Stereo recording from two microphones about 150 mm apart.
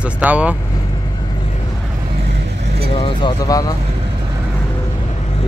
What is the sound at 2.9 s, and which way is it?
Speech, 35° left (ahead or behind).